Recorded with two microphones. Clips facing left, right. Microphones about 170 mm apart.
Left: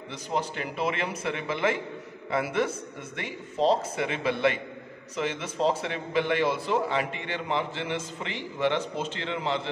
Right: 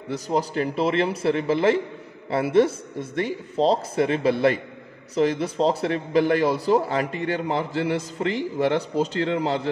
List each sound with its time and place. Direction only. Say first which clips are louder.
0.1 s a man's voice: right 7 dB; 40° right (ahead or behind)